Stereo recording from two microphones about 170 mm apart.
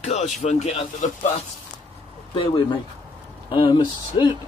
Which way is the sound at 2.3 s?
30° left (ahead or behind).